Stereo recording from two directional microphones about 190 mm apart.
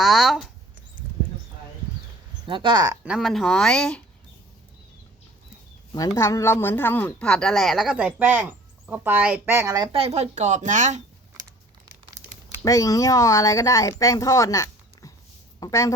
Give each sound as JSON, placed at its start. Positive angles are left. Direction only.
{"t": 0.0, "sound": "a sound", "side_deg": 0}
{"t": 2.5, "sound": "speech", "side_deg": -25}
{"t": 3.1, "sound": "speech", "side_deg": 0}
{"t": 6.1, "sound": "a woman's voice", "side_deg": 15}
{"t": 12.6, "sound": "speech", "side_deg": 15}